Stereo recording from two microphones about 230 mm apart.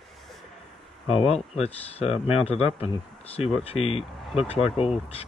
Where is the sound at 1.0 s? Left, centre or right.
Left.